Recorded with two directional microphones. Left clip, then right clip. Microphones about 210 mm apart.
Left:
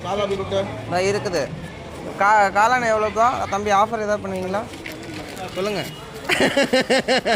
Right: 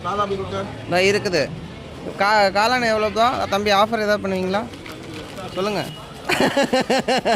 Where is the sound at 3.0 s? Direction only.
35° right (ahead or behind).